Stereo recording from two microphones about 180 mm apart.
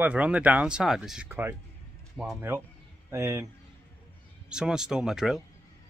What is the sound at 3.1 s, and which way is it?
Speech, 15° right (ahead or behind).